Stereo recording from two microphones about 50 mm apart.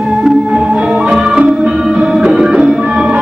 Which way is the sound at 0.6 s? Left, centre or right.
Right.